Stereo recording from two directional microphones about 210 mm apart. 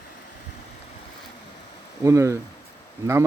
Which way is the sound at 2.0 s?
15° right (ahead or behind).